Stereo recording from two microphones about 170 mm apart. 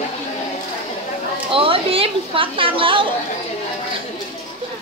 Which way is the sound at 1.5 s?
30° right (ahead or behind).